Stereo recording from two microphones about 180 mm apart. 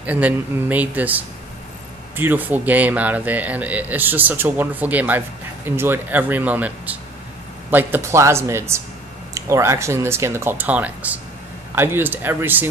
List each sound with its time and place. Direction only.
0.0 s speech: 10° right (ahead or behind)